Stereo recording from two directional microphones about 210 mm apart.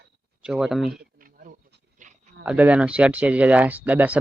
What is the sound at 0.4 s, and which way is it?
Speech, centre (ahead or behind).